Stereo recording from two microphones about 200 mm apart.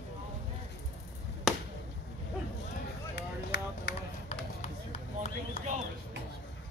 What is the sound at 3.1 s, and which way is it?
Run, 60° left (ahead or behind).